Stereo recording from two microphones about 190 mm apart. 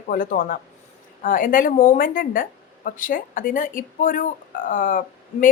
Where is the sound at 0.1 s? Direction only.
45° left (ahead or behind).